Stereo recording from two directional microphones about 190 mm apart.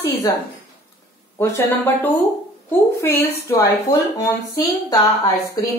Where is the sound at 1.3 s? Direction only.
10° left (ahead or behind).